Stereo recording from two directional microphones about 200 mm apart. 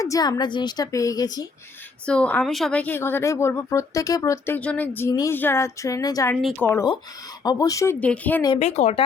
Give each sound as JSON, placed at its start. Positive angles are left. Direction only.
{"t": 0.0, "sound": "a woman's voice", "side_deg": 20}
{"t": 2.0, "sound": "speech", "side_deg": 5}
{"t": 8.5, "sound": "speech", "side_deg": 35}